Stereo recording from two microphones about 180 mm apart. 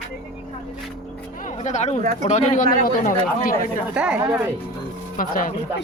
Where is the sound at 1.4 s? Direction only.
40° left (ahead or behind).